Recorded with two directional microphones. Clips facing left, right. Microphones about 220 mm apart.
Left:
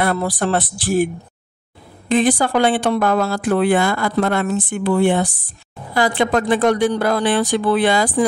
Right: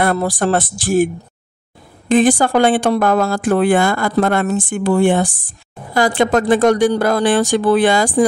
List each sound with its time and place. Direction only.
0.0 s speech: 45° right (ahead or behind)